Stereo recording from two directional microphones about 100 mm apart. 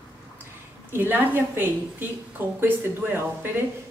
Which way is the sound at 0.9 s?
20° right (ahead or behind).